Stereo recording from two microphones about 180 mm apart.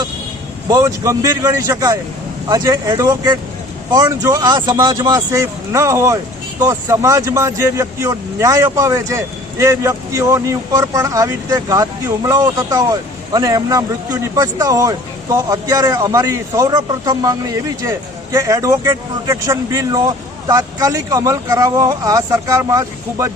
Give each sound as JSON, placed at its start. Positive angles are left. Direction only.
{"t": 0.7, "sound": "speech", "side_deg": -20}